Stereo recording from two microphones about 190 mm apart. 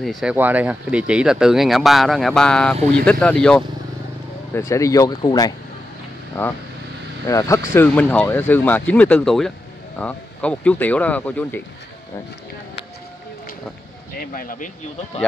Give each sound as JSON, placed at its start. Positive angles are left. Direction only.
{"t": 0.0, "sound": "speech", "side_deg": 0}
{"t": 4.6, "sound": "speech", "side_deg": 15}
{"t": 7.2, "sound": "speech", "side_deg": 15}
{"t": 14.3, "sound": "speech", "side_deg": 45}